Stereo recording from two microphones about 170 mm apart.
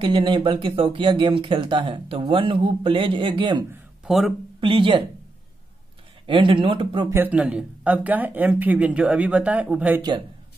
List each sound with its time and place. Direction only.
0.0 s speech: 30° right (ahead or behind)
4.0 s a sound: centre (ahead or behind)
4.6 s speech: 30° right (ahead or behind)
6.2 s speech: 30° right (ahead or behind)
7.1 s speech: 10° right (ahead or behind)